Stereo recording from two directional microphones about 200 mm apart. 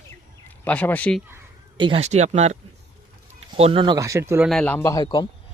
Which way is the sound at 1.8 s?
25° right (ahead or behind).